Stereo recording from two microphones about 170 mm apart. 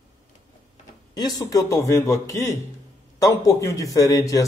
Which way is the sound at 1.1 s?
20° left (ahead or behind).